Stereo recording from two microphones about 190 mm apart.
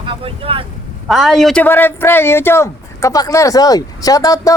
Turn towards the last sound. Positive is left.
turn(degrees=15)  # may be behind; listen again after turning